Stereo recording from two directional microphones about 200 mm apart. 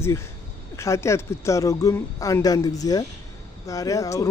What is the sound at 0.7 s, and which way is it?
Speech, 15° left (ahead or behind).